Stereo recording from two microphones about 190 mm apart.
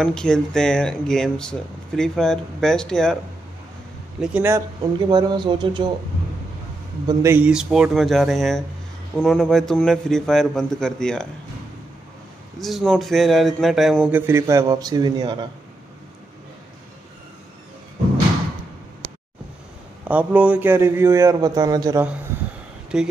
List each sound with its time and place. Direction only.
0.0 s speech: 5° left (ahead or behind)
4.2 s a man's voice: 10° right (ahead or behind)
4.9 s speech: 25° right (ahead or behind)
7.1 s speech: 10° right (ahead or behind); by 11.2 s 5° left (ahead or behind)
12.5 s speech: centre (ahead or behind); by 15.3 s 20° right (ahead or behind)
20.1 s a man's voice: 5° right (ahead or behind)
22.9 s speech: 5° right (ahead or behind)